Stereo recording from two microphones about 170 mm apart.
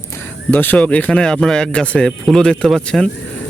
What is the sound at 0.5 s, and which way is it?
Speech, 10° left (ahead or behind).